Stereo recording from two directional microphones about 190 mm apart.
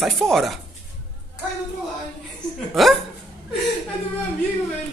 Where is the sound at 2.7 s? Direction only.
Centre (ahead or behind).